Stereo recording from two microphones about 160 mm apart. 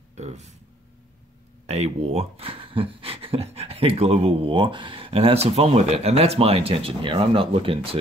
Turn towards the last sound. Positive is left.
turn(degrees=-35)  # may be behind; listen again after turning